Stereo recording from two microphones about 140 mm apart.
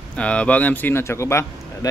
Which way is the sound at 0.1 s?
10° left (ahead or behind).